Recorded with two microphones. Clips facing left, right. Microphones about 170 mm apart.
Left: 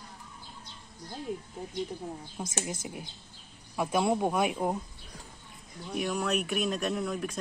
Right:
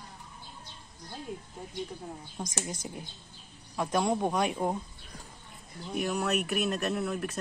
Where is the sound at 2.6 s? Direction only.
10° left (ahead or behind).